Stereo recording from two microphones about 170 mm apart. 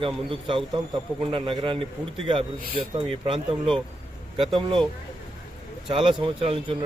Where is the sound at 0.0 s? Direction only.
30° right (ahead or behind).